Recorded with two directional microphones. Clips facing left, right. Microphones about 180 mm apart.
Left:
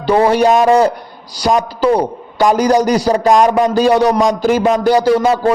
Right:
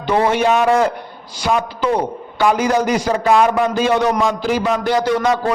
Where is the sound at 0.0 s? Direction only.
35° left (ahead or behind).